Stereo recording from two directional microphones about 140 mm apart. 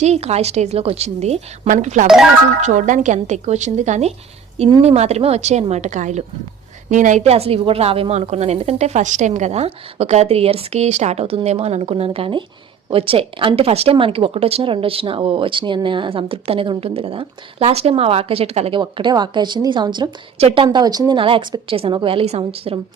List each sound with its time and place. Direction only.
0.0 s a woman's voice: 50° right (ahead or behind)
18.8 s speech: 35° right (ahead or behind)